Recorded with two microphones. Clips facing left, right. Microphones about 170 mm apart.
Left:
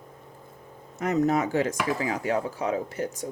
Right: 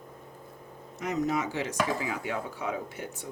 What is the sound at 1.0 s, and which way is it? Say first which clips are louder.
Speech: left 6 dB; 45° left (ahead or behind).